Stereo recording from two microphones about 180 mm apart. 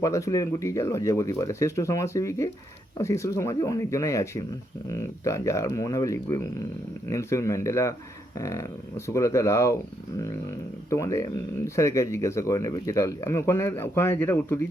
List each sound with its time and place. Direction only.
0.0 s speech: 20° left (ahead or behind)
10.8 s speech: 15° left (ahead or behind)